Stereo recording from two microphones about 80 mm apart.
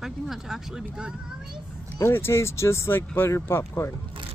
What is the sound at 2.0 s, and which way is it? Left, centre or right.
Speech, left.